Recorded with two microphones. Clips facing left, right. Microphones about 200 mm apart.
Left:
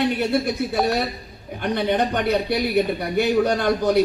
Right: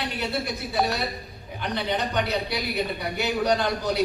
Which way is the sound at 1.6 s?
50° left (ahead or behind).